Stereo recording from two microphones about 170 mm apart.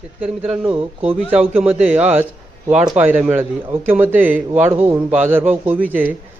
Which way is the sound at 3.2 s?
10° right (ahead or behind).